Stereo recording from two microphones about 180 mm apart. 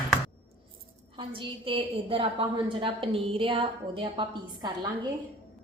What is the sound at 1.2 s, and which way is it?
A woman's voice, 30° right (ahead or behind).